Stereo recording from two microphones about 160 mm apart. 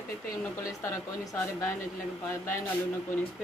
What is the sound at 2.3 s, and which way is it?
Speech, 15° left (ahead or behind).